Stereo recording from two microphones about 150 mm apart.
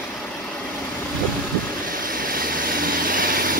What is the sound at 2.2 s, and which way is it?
Vehicle, 70° right (ahead or behind).